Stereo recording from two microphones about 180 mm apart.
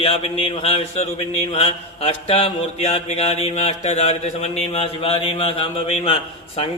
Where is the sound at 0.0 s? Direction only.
35° left (ahead or behind).